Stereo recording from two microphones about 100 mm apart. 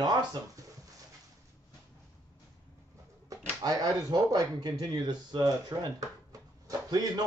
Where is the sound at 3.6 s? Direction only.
40° right (ahead or behind).